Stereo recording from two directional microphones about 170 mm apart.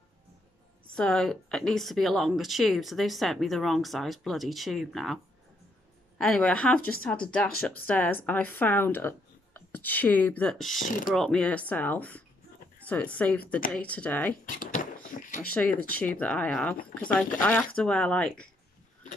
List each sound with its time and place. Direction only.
0.9 s speech: 5° left (ahead or behind)
10.8 s mechanisms: 50° left (ahead or behind)
11.1 s speech: centre (ahead or behind)
14.4 s a sound: 50° left (ahead or behind)
16.0 s speech: 10° left (ahead or behind)